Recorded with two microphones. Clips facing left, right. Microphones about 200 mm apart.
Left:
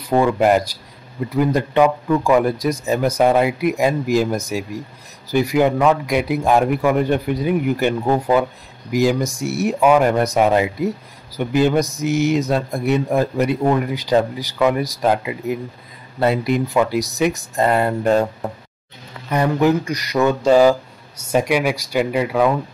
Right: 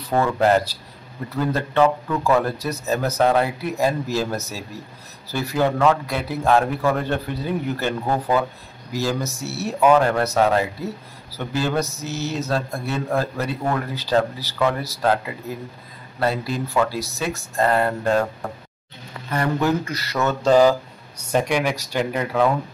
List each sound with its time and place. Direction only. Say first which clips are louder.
0.1 s speech: left 3 dB; 15° left (ahead or behind)
19.3 s speech: left 5 dB; 15° left (ahead or behind)